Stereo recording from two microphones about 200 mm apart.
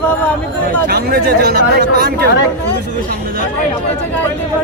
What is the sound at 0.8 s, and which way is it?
Speech, 50° right (ahead or behind).